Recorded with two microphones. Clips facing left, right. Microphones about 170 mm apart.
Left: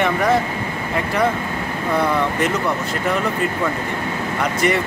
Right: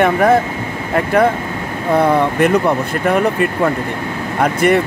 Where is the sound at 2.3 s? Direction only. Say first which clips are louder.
Right 7 dB; 55° right (ahead or behind).